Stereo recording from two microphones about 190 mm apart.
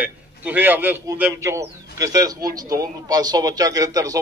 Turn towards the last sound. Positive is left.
turn(degrees=-20)  # may be behind; listen again after turning